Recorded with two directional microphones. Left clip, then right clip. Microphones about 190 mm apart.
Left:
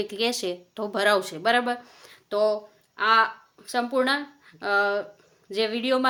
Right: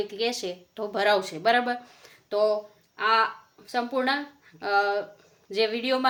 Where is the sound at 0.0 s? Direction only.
40° left (ahead or behind).